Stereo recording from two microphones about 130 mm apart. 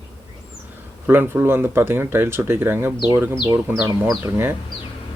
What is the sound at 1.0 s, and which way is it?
Speech, 15° right (ahead or behind).